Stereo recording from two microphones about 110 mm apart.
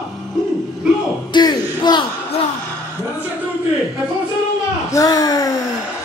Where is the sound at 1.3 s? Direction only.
40° left (ahead or behind).